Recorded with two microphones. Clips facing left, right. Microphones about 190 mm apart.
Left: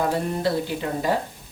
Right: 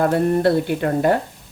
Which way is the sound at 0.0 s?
60° right (ahead or behind).